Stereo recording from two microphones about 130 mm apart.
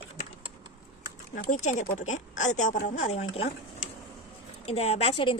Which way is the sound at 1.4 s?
75° left (ahead or behind).